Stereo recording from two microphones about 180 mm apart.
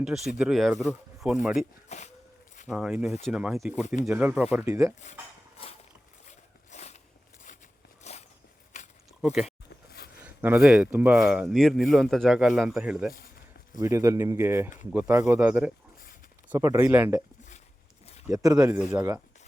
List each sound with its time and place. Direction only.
0.0 s speech: centre (ahead or behind)
1.9 s speech: 40° left (ahead or behind)
2.6 s speech: 5° right (ahead or behind)
6.2 s a sound: 40° left (ahead or behind)
9.2 s speech: 5° right (ahead or behind)
13.8 s speech: 15° right (ahead or behind)
18.3 s speech: 20° right (ahead or behind)